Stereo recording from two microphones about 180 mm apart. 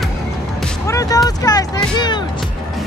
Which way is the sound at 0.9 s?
20° left (ahead or behind).